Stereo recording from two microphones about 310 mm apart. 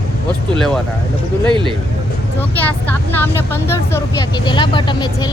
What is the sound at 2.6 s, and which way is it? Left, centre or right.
Speech, centre.